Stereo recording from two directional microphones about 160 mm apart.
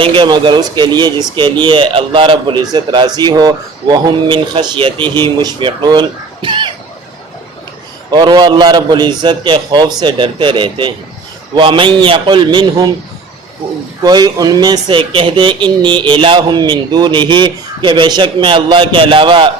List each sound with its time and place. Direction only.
0.0 s speech: 30° right (ahead or behind)
8.1 s a man's voice: 30° right (ahead or behind)
14.0 s speech: 25° right (ahead or behind)